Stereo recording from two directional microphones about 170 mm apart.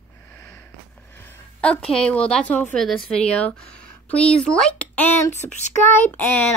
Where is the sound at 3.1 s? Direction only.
5° left (ahead or behind).